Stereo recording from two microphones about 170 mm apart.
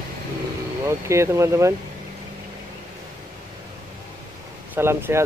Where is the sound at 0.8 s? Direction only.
15° right (ahead or behind).